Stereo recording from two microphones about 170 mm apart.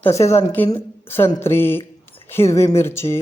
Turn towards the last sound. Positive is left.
turn(degrees=15)  # may be behind; listen again after turning